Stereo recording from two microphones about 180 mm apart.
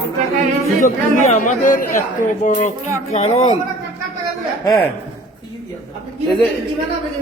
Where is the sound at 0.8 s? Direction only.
45° left (ahead or behind).